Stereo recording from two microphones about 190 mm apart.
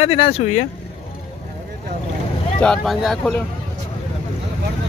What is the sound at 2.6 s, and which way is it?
Speech, centre (ahead or behind).